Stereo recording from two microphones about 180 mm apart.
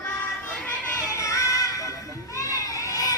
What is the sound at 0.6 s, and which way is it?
Music, 15° left (ahead or behind).